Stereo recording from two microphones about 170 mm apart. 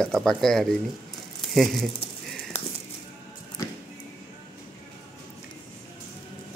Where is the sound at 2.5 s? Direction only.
40° left (ahead or behind).